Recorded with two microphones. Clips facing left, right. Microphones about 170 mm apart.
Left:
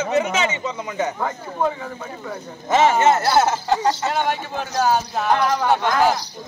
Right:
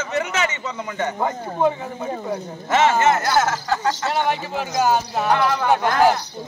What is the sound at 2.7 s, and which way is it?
Speech, 15° left (ahead or behind).